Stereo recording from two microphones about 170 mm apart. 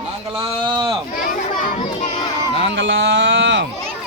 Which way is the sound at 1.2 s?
55° left (ahead or behind).